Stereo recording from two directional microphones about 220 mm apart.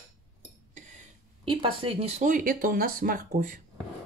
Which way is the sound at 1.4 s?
25° right (ahead or behind).